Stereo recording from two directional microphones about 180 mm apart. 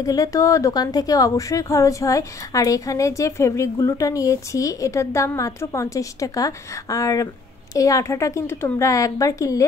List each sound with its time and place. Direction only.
0.0 s a woman's voice: 20° left (ahead or behind)